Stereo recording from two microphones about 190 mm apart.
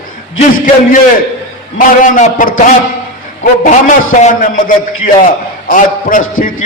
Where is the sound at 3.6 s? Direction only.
40° left (ahead or behind).